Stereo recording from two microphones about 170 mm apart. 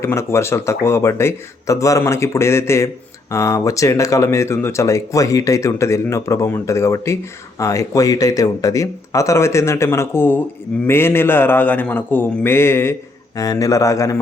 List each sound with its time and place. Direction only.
0.0 s speech: 15° left (ahead or behind)